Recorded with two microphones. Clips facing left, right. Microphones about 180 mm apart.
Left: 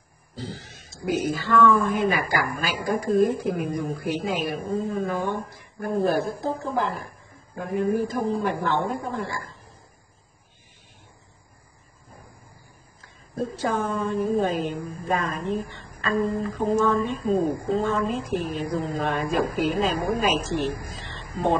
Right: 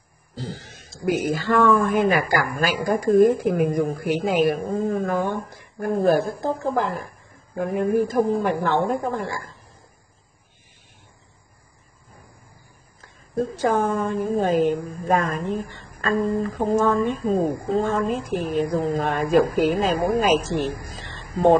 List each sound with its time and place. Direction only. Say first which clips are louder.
0.4 s speech: right 2 dB; 50° right (ahead or behind)
13.4 s speech: right 5 dB; 50° right (ahead or behind)
20.9 s a sound: right 3 dB; 45° right (ahead or behind)